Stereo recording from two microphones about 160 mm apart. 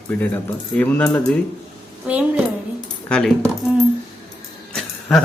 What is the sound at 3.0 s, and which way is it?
Speech, 5° left (ahead or behind).